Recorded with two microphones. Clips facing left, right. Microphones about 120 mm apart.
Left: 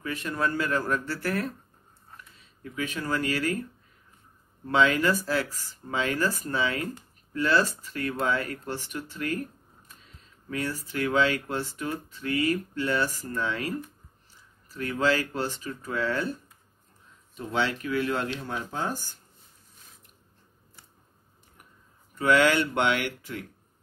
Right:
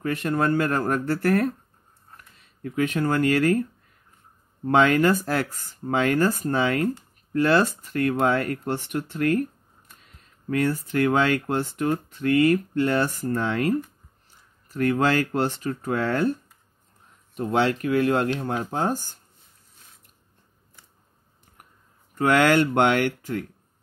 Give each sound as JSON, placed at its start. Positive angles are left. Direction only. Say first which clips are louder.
{"t": 0.0, "sound": "speech", "louder": "right 6 dB", "side_deg": -55}
{"t": 2.6, "sound": "speech", "louder": "right 9 dB", "side_deg": -55}
{"t": 4.6, "sound": "speech", "louder": "right 5 dB", "side_deg": -55}
{"t": 10.5, "sound": "speech", "louder": "right 8 dB", "side_deg": -55}
{"t": 17.4, "sound": "speech", "louder": "right 6 dB", "side_deg": -50}
{"t": 22.2, "sound": "speech", "louder": "right 3 dB", "side_deg": -55}